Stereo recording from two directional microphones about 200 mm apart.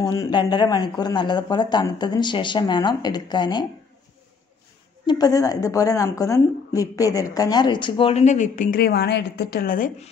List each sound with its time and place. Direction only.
0.0 s a woman's voice: 15° left (ahead or behind)
5.0 s a woman's voice: 20° left (ahead or behind); by 10.0 s 45° left (ahead or behind)